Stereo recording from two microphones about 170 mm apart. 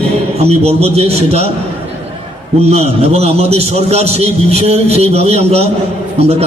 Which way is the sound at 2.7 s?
35° right (ahead or behind).